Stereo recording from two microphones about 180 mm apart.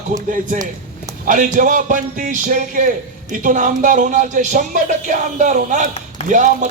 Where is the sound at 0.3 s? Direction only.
45° right (ahead or behind).